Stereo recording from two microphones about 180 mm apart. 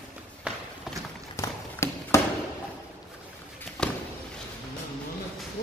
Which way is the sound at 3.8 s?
5° left (ahead or behind).